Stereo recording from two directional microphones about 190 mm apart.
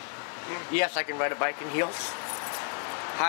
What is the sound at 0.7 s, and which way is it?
Speech, 10° left (ahead or behind).